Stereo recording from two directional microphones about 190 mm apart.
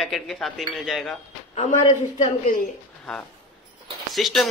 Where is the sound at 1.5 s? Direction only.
35° left (ahead or behind).